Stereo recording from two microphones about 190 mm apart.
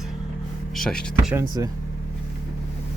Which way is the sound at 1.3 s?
15° right (ahead or behind).